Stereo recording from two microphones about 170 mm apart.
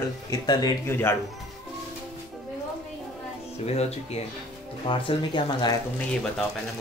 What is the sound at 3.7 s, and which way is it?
Speech, 40° left (ahead or behind).